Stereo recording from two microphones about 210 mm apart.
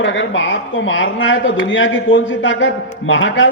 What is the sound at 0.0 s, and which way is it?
Speech, 60° left (ahead or behind).